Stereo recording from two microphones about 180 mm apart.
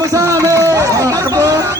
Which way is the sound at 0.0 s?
15° right (ahead or behind).